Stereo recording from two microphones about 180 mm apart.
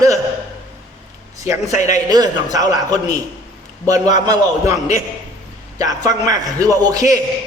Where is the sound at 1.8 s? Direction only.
20° right (ahead or behind).